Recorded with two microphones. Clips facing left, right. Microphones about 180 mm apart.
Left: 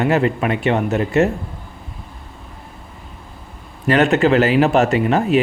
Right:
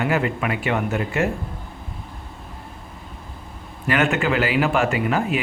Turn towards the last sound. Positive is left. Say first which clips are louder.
# left 5 dB
turn(degrees=35)  # may be behind; listen again after turning